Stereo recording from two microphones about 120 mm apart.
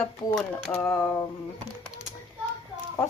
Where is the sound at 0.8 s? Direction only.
20° left (ahead or behind).